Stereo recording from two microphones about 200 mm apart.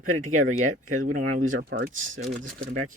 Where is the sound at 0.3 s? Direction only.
40° right (ahead or behind).